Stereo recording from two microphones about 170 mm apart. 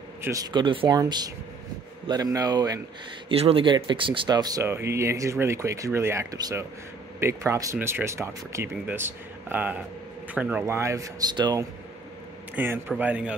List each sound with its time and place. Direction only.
0.2 s speech: 20° right (ahead or behind)
3.3 s speech: 35° right (ahead or behind)
12.5 s speech: 10° right (ahead or behind)